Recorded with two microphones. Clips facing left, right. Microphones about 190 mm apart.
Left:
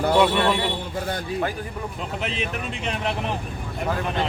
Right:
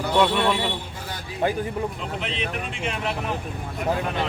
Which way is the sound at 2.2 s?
40° left (ahead or behind).